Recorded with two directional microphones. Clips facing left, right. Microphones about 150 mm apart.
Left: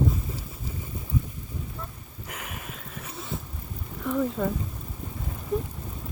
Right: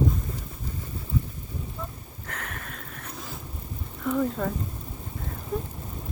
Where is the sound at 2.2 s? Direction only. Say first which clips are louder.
Even; 10° left (ahead or behind).